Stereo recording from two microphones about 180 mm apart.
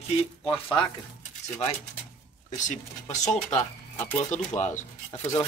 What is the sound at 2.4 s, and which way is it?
Speech, 40° left (ahead or behind).